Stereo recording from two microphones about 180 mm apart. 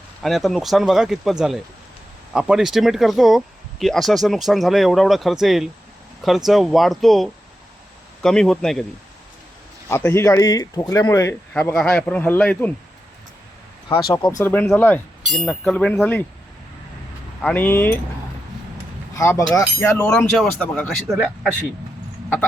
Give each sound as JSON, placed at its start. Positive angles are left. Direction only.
{"t": 0.2, "sound": "speech", "side_deg": 0}
{"t": 9.9, "sound": "speech", "side_deg": 15}
{"t": 11.5, "sound": "speech", "side_deg": 5}
{"t": 14.1, "sound": "speech", "side_deg": 15}
{"t": 17.4, "sound": "speech", "side_deg": 10}
{"t": 19.1, "sound": "speech", "side_deg": 15}